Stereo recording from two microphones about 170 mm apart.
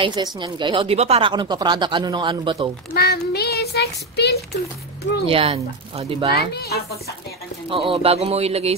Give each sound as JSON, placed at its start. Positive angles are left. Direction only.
{"t": 0.0, "sound": "a woman's voice", "side_deg": -25}
{"t": 2.9, "sound": "speech", "side_deg": 65}
{"t": 5.2, "sound": "speech", "side_deg": -35}
{"t": 7.7, "sound": "speech", "side_deg": -35}